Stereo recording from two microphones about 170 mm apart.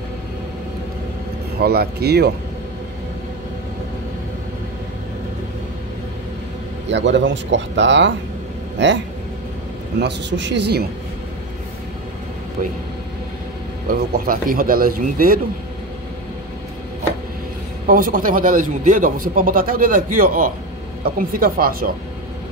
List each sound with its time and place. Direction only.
1.6 s speech: 70° right (ahead or behind)
6.9 s a man's voice: 90° right
13.8 s a man's voice: 60° right (ahead or behind)
17.8 s a man's voice: 55° right (ahead or behind)